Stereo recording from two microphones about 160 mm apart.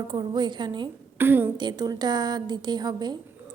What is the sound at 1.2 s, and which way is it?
Speech, 15° right (ahead or behind).